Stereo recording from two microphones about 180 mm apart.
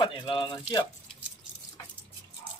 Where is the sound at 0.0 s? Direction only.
25° left (ahead or behind).